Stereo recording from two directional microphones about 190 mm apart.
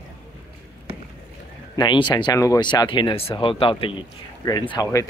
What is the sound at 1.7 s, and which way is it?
Speech, 25° left (ahead or behind).